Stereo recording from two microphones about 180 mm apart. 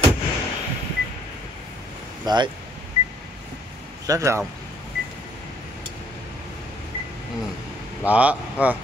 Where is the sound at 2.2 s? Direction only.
25° right (ahead or behind).